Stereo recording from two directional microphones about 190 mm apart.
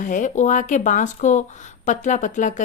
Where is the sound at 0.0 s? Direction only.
40° left (ahead or behind).